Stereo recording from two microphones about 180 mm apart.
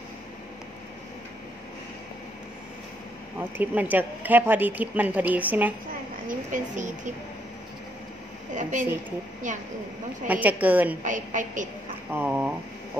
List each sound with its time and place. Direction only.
3.3 s speech: 10° right (ahead or behind)
6.2 s a woman's voice: 45° right (ahead or behind)
8.5 s a woman's voice: 45° right (ahead or behind)
10.2 s speech: 10° right (ahead or behind)
11.1 s a woman's voice: 45° right (ahead or behind)
12.1 s speech: 10° right (ahead or behind)